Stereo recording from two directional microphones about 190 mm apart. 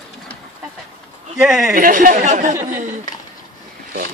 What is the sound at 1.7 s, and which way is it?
Speech, 45° right (ahead or behind).